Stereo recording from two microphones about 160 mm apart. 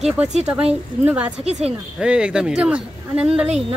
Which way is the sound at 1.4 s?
40° right (ahead or behind).